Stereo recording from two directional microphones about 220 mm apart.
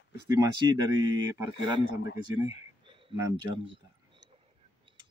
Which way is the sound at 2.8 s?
25° right (ahead or behind).